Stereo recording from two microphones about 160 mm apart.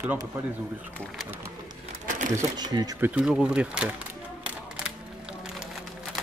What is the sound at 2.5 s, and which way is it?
Speech, 25° right (ahead or behind).